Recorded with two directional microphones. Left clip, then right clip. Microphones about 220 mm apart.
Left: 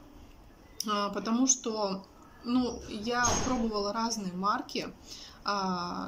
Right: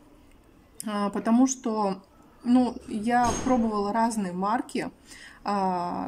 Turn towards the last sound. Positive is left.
turn(degrees=-30)  # may be behind; listen again after turning